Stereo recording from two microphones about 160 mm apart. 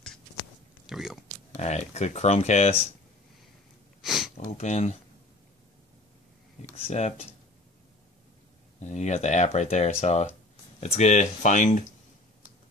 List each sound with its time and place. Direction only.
0.8 s a sound: centre (ahead or behind)
1.5 s speech: 45° left (ahead or behind)
4.0 s a sound: centre (ahead or behind)
4.5 s speech: 45° left (ahead or behind)
6.9 s speech: 45° left (ahead or behind)
8.8 s speech: 45° left (ahead or behind)